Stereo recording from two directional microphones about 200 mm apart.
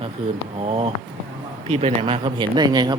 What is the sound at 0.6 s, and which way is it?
A man's voice, 30° right (ahead or behind).